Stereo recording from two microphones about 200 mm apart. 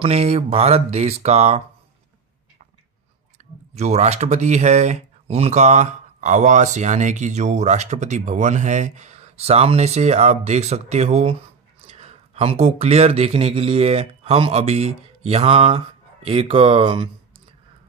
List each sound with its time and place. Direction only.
0.0 s speech: 30° right (ahead or behind)
3.4 s a sound: 35° right (ahead or behind)
3.7 s speech: 35° right (ahead or behind)